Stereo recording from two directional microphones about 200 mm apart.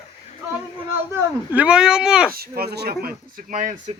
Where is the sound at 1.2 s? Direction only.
5° right (ahead or behind).